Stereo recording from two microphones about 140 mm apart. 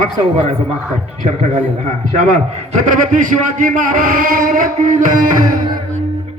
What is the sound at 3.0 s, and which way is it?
Speech, 70° right (ahead or behind).